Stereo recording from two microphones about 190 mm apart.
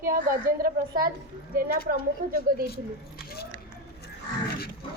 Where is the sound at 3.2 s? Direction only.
55° left (ahead or behind).